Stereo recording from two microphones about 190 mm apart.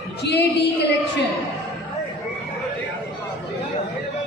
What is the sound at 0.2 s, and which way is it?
Speech, 60° left (ahead or behind).